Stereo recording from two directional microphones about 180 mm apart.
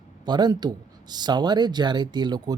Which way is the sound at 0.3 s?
25° right (ahead or behind).